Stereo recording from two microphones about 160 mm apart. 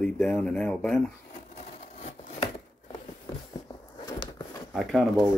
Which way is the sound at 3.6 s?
25° left (ahead or behind).